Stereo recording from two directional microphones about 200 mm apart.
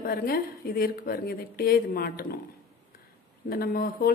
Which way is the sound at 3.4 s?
50° left (ahead or behind).